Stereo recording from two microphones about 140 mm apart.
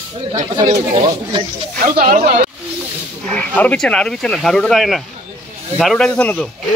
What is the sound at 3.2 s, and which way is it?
Speech, 10° left (ahead or behind).